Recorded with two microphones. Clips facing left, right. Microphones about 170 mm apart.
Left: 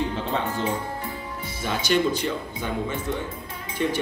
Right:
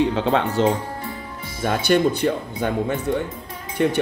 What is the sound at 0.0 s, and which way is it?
Speech, 85° right.